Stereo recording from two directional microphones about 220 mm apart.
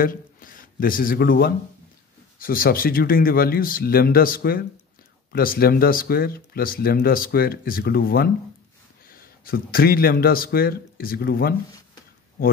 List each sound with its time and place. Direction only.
0.0 s a man's voice: 40° left (ahead or behind)